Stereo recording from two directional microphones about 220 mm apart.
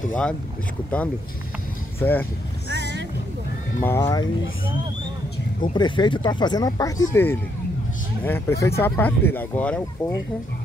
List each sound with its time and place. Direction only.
0.1 s speech: 5° left (ahead or behind)
2.0 s speech: 10° left (ahead or behind)
2.7 s vehicle: 55° right (ahead or behind)
3.8 s speech: 15° left (ahead or behind)
5.7 s speech: 20° left (ahead or behind)